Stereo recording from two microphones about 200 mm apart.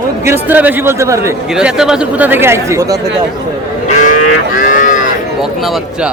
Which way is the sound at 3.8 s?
40° left (ahead or behind).